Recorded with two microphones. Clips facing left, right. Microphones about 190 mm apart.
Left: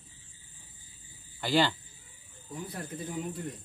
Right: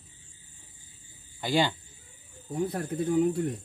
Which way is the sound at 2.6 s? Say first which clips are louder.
Right 10 dB; 55° right (ahead or behind).